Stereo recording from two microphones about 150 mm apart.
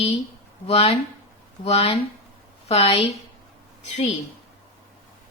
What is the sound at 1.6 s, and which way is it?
A woman's voice, 40° left (ahead or behind).